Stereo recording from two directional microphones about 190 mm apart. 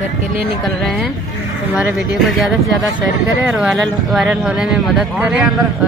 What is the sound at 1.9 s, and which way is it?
Speech, centre (ahead or behind).